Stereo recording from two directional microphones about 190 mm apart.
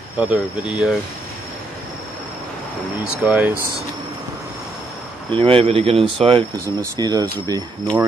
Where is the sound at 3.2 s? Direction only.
5° right (ahead or behind).